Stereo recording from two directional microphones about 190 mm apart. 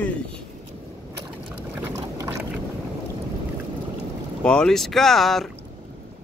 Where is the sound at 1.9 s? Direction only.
15° right (ahead or behind).